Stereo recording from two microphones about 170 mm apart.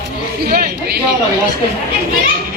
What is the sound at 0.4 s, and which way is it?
Speech, 60° right (ahead or behind).